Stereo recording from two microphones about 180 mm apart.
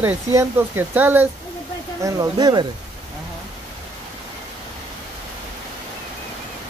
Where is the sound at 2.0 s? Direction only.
20° right (ahead or behind).